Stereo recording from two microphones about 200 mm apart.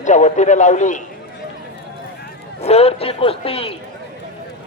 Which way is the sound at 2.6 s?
30° left (ahead or behind).